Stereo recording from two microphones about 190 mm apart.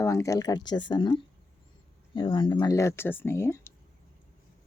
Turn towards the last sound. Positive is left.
turn(degrees=15)  # may be behind; listen again after turning